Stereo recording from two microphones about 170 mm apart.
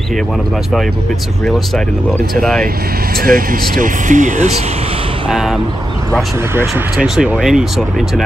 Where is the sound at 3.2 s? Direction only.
55° right (ahead or behind).